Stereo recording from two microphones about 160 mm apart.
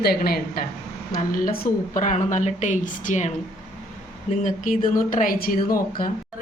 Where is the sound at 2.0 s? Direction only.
50° left (ahead or behind).